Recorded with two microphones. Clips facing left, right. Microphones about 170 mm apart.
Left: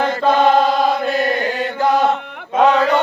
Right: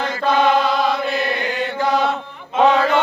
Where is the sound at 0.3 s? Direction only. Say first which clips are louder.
Left 2 dB; 45° left (ahead or behind).